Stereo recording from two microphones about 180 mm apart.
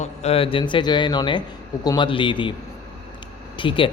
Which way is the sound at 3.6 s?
30° left (ahead or behind).